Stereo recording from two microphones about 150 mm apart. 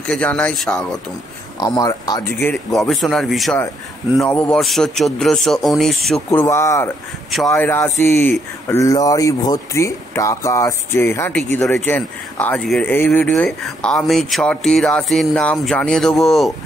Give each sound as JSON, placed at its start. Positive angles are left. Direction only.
{"t": 0.0, "sound": "speech", "side_deg": 5}
{"t": 1.6, "sound": "speech", "side_deg": 25}
{"t": 2.4, "sound": "speech", "side_deg": 5}
{"t": 6.3, "sound": "speech", "side_deg": 20}
{"t": 7.2, "sound": "speech", "side_deg": 0}
{"t": 7.5, "sound": "speech", "side_deg": 15}